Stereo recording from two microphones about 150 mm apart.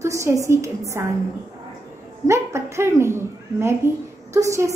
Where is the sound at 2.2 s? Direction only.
20° right (ahead or behind).